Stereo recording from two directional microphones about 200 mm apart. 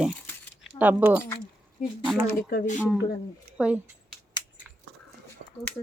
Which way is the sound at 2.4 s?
45° left (ahead or behind).